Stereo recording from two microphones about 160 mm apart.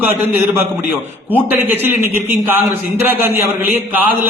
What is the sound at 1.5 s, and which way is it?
A man's voice, 15° right (ahead or behind).